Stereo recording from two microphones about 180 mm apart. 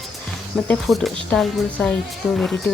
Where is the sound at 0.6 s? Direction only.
5° left (ahead or behind).